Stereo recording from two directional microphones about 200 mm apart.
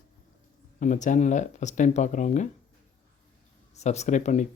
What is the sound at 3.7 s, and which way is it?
Speech, 35° left (ahead or behind).